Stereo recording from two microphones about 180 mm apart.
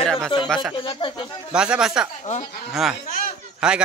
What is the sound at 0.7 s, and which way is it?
Speech, 30° left (ahead or behind).